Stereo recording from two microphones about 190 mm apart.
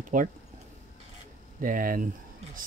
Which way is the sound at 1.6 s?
45° right (ahead or behind).